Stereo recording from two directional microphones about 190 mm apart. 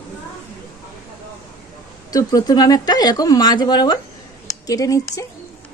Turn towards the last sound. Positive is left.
turn(degrees=15)  # may be behind; listen again after turning